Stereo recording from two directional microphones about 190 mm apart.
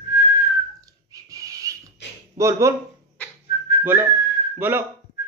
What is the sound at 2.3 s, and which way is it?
Speech, 15° right (ahead or behind).